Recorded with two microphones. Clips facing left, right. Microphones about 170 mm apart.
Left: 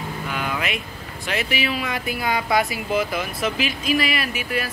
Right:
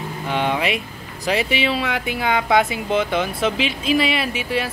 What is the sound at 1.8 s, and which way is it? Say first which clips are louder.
Speech: right 3 dB; 90° right.